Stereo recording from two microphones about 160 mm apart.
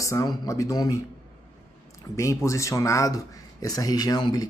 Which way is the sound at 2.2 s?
20° left (ahead or behind).